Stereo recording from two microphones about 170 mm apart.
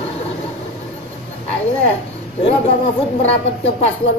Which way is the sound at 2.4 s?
35° left (ahead or behind).